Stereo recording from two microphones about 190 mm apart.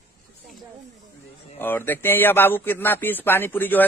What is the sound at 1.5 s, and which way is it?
Speech, 10° left (ahead or behind).